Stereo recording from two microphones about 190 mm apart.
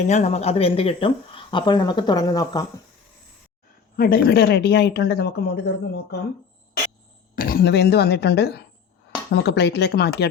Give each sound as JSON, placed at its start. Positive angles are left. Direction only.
{"t": 0.1, "sound": "speech", "side_deg": 35}
{"t": 3.9, "sound": "a woman's voice", "side_deg": 50}
{"t": 7.3, "sound": "a woman's voice", "side_deg": 50}